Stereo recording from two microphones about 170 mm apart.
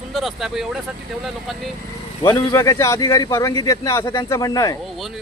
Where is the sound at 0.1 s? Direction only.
Centre (ahead or behind).